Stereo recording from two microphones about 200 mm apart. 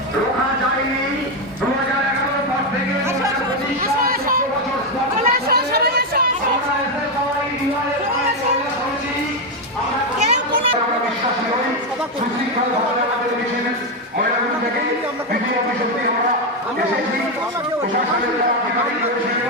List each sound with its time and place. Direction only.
5.2 s chatter: 50° right (ahead or behind)
10.2 s children playing: 25° right (ahead or behind)